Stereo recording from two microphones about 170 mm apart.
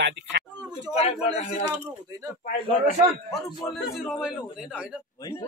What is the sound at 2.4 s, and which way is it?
Speech, 50° left (ahead or behind).